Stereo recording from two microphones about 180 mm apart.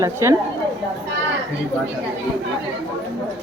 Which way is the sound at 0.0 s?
15° right (ahead or behind).